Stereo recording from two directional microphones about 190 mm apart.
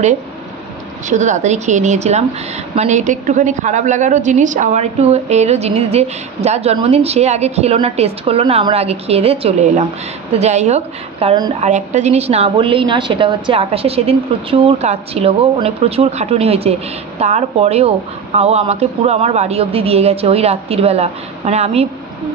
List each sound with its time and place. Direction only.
1.0 s a woman's voice: 40° right (ahead or behind)